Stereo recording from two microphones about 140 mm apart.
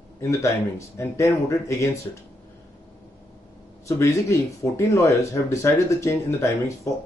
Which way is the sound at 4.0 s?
20° left (ahead or behind).